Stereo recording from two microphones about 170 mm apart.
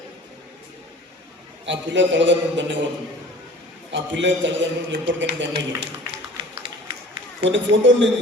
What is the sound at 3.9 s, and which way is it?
A woman's voice, 90° right.